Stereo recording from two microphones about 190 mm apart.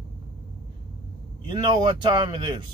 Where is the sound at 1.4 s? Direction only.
25° right (ahead or behind).